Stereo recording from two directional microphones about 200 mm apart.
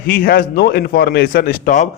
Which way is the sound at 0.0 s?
45° left (ahead or behind).